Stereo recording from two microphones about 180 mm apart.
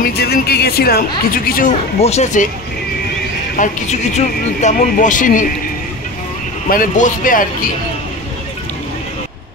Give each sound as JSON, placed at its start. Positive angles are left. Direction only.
{"t": 0.0, "sound": "speech", "side_deg": 60}
{"t": 3.5, "sound": "speech", "side_deg": 45}
{"t": 6.7, "sound": "speech", "side_deg": 50}